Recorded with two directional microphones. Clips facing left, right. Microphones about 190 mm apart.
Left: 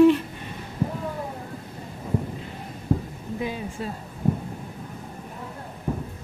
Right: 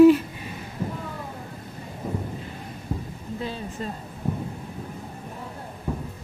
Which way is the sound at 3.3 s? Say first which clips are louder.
Left 2 dB; 15° left (ahead or behind).